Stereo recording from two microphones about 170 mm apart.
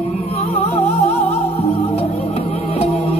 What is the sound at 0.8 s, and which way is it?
Music, 40° left (ahead or behind).